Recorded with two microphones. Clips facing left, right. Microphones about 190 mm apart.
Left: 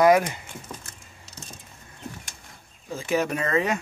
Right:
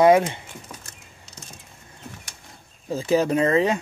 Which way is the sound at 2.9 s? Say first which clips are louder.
Right 5 dB; 35° right (ahead or behind).